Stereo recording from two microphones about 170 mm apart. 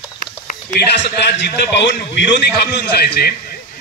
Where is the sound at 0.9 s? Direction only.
85° left.